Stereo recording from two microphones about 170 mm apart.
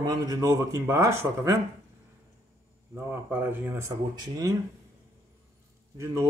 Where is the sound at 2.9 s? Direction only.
15° right (ahead or behind).